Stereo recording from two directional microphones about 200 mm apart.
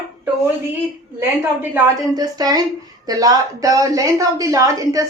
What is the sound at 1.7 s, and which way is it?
A woman's voice, 20° right (ahead or behind).